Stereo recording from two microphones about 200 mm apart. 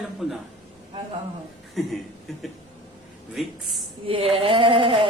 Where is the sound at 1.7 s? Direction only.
Centre (ahead or behind).